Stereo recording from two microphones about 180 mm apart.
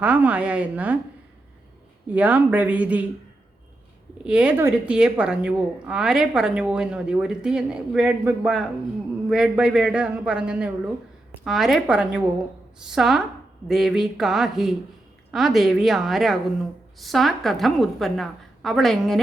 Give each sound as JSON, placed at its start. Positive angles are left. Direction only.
{"t": 0.0, "sound": "speech", "side_deg": -10}
{"t": 2.0, "sound": "speech", "side_deg": -10}
{"t": 4.2, "sound": "a woman's voice", "side_deg": -5}